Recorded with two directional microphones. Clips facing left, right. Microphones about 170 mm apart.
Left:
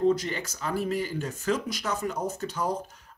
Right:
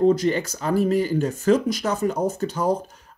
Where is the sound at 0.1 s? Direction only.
40° right (ahead or behind).